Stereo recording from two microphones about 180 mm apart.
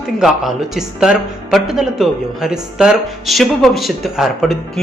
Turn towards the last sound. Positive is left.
turn(degrees=0)  # may be behind; listen again after turning